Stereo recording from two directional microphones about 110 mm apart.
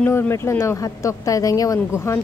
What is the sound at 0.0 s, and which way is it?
Speech, 25° left (ahead or behind).